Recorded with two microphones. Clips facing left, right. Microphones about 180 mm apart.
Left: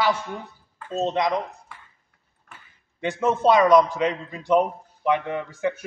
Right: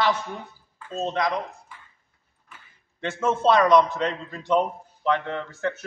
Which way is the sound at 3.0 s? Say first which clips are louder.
Left 2 dB; 15° left (ahead or behind).